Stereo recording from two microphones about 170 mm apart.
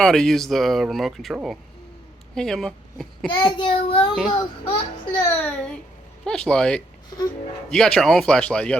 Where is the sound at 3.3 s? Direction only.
30° left (ahead or behind).